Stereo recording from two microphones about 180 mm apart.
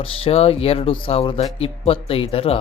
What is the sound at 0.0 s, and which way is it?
Speech, 30° left (ahead or behind).